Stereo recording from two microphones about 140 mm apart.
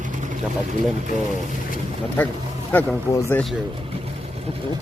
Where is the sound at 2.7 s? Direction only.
15° left (ahead or behind).